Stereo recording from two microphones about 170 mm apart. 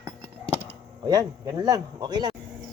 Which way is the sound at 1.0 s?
20° right (ahead or behind).